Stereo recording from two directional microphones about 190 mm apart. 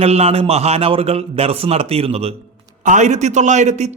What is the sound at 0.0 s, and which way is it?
A man's voice, 30° right (ahead or behind).